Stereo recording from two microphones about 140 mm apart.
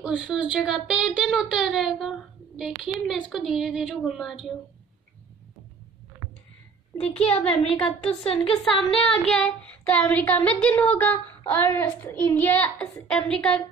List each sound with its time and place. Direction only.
0.0 s speech: 5° right (ahead or behind)
7.2 s a child's voice: 45° left (ahead or behind)
9.8 s speech: 10° left (ahead or behind)